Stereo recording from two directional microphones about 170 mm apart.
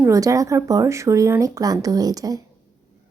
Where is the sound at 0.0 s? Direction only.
20° right (ahead or behind).